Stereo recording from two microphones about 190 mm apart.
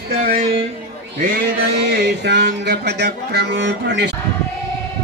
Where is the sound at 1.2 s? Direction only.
55° right (ahead or behind).